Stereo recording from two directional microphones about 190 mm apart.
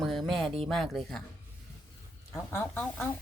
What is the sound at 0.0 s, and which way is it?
Music, centre (ahead or behind).